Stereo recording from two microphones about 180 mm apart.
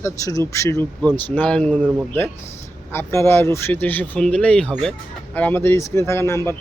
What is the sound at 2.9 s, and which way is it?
Speech, 15° left (ahead or behind).